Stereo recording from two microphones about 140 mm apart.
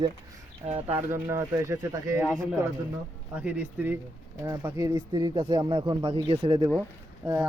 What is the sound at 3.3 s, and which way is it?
Speech, 10° right (ahead or behind).